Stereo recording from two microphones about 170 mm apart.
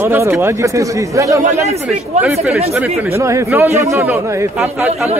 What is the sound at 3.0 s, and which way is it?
A man's voice, 15° right (ahead or behind).